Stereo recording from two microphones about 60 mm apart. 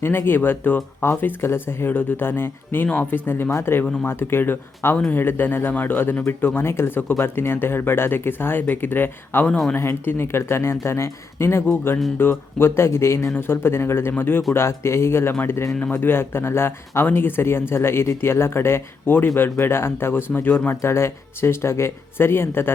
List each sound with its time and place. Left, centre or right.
0.0 s speech: left
13.3 s speech: left